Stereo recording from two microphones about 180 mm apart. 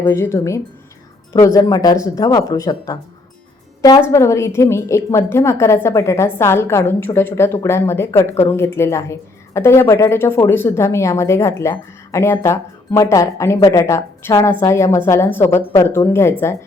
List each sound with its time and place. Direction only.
0.0 s a woman's voice: 15° left (ahead or behind)